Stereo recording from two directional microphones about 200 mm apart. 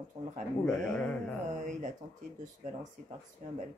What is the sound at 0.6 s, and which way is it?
Speech, 5° left (ahead or behind).